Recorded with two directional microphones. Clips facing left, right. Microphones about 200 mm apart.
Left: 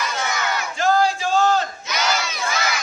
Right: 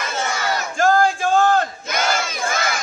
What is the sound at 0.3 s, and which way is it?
Battle cry, 40° right (ahead or behind).